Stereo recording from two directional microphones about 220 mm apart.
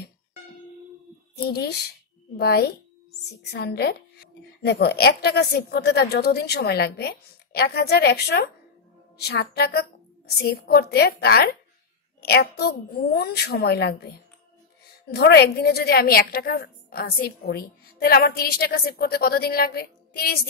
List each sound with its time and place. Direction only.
1.3 s a woman's voice: 45° left (ahead or behind)